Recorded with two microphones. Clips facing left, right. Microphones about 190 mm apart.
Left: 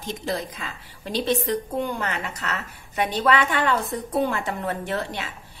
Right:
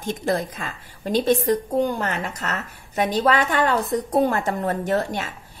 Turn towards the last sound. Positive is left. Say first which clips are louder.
# right 5 dB
turn(degrees=-45)  # may be behind; listen again after turning